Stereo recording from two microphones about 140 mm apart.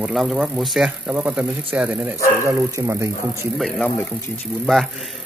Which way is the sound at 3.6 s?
5° left (ahead or behind).